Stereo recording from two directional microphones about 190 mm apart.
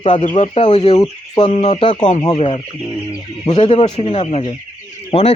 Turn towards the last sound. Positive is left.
turn(degrees=35)  # may be behind; listen again after turning